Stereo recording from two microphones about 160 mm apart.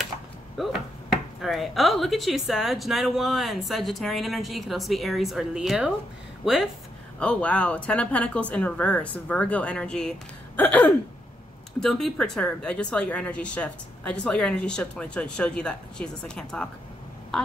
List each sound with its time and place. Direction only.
0.6 s speech: centre (ahead or behind)